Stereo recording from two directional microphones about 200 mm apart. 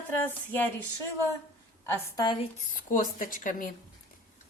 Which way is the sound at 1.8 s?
15° left (ahead or behind).